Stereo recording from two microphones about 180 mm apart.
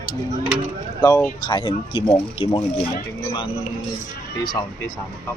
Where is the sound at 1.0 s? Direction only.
10° left (ahead or behind).